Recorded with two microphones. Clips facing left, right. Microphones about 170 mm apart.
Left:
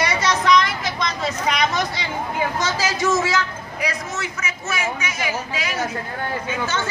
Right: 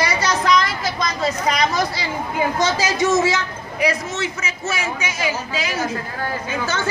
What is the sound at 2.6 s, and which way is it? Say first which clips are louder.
A man's voice: right 4 dB; 20° right (ahead or behind).